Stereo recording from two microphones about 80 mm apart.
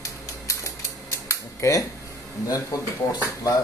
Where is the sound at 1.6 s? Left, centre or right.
Left.